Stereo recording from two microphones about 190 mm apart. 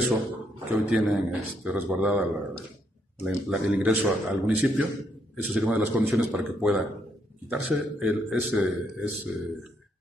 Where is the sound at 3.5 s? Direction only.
5° right (ahead or behind).